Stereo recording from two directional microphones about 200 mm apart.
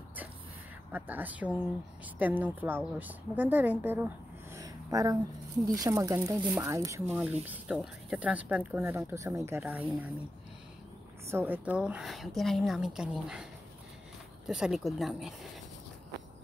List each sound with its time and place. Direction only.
0.9 s a woman's voice: 10° right (ahead or behind)
11.2 s a woman's voice: 10° right (ahead or behind)
14.5 s a woman's voice: centre (ahead or behind)